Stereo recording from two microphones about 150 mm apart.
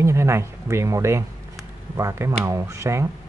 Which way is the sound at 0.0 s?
20° right (ahead or behind).